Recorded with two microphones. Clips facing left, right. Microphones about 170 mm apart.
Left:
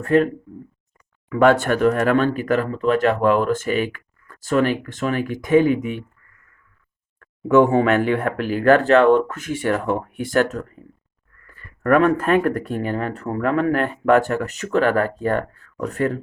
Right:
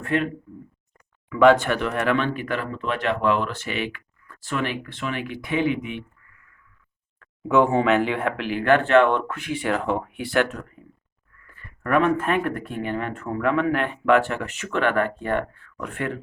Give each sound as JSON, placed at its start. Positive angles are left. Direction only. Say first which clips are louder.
{"t": 0.0, "sound": "speech", "louder": "left 7 dB", "side_deg": 40}
{"t": 1.3, "sound": "speech", "louder": "left 1 dB", "side_deg": 45}
{"t": 7.2, "sound": "speech", "louder": "left 4 dB", "side_deg": 45}